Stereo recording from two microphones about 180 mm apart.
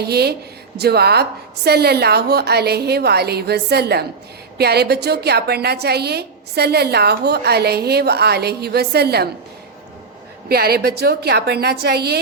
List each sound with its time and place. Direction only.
0.0 s a woman's voice: 65° right (ahead or behind)
10.5 s a woman's voice: 60° right (ahead or behind)